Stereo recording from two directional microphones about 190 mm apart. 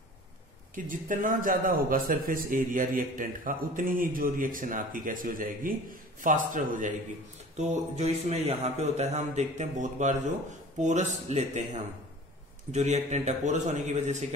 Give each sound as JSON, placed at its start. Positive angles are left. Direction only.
{"t": 0.7, "sound": "a man's voice", "side_deg": -45}
{"t": 12.7, "sound": "speech", "side_deg": -35}